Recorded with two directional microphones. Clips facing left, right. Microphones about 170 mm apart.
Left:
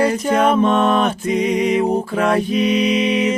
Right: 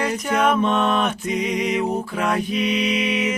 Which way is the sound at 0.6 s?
45° left (ahead or behind).